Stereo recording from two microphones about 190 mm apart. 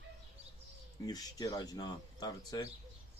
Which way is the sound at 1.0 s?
20° left (ahead or behind).